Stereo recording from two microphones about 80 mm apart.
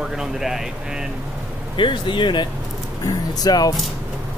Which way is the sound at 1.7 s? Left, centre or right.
Left.